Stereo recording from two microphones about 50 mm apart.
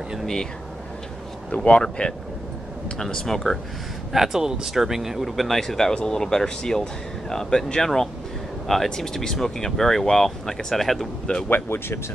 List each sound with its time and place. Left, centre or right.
1.6 s speech: centre
4.1 s speech: centre
11.4 s speech: left